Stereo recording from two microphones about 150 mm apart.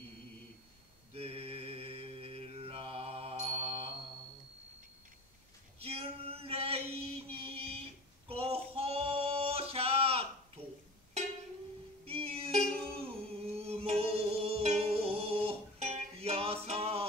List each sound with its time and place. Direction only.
1.1 s mantra: 40° right (ahead or behind)
5.8 s chant: 40° right (ahead or behind)
8.3 s male singing: 40° right (ahead or behind)
12.0 s music: 40° right (ahead or behind)